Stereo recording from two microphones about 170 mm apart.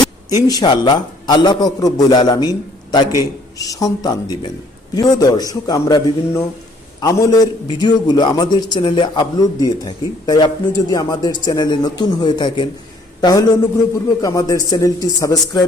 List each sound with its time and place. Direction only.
0.0 s a man's voice: 20° left (ahead or behind)